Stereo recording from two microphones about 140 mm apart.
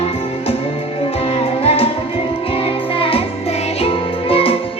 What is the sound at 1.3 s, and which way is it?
Music, 45° left (ahead or behind).